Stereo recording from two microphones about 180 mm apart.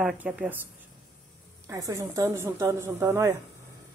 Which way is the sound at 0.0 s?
10° right (ahead or behind).